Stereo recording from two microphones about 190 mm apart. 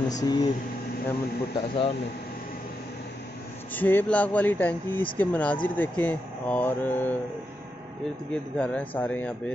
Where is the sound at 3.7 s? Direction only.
10° left (ahead or behind).